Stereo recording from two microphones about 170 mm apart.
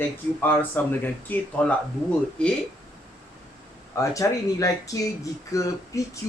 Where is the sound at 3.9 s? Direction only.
20° left (ahead or behind).